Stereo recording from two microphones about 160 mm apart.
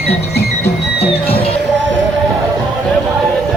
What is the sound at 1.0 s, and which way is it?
Music, 35° left (ahead or behind).